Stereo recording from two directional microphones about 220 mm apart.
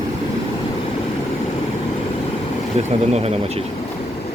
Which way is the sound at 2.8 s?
30° right (ahead or behind).